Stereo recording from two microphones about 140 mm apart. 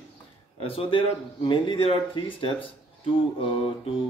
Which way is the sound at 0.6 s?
40° left (ahead or behind).